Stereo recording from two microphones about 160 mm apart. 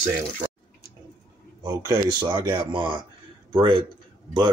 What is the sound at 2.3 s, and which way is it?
Speech, 30° right (ahead or behind).